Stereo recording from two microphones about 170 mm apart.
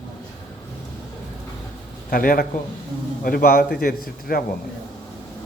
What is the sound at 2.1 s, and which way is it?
A man's voice, 55° left (ahead or behind).